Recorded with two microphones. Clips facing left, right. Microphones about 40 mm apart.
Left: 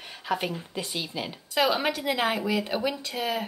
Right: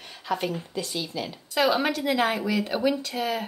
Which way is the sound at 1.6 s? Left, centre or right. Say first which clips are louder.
Right 2 dB; centre.